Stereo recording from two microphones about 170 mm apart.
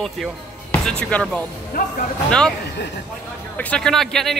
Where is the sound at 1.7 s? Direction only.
60° left (ahead or behind).